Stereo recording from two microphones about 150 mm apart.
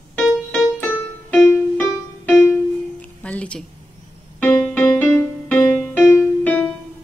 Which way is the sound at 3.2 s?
10° left (ahead or behind).